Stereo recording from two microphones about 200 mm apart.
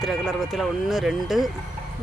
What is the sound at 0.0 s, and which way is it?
Speech, centre (ahead or behind).